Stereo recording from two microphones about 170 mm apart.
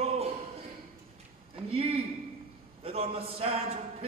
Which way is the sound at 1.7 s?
35° right (ahead or behind).